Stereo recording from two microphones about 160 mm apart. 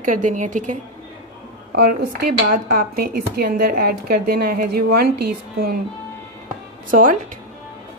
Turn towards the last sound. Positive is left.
turn(degrees=-60)  # may be behind; listen again after turning